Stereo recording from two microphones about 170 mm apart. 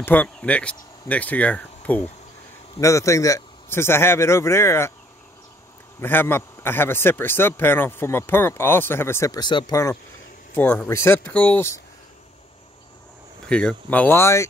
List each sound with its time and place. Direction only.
0.0 s a man's voice: 10° left (ahead or behind)
5.9 s a man's voice: 10° left (ahead or behind)
10.5 s a man's voice: 10° left (ahead or behind)
13.5 s a man's voice: 5° left (ahead or behind)